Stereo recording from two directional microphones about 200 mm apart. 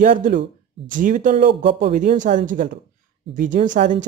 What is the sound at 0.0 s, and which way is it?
A woman's voice, 40° right (ahead or behind).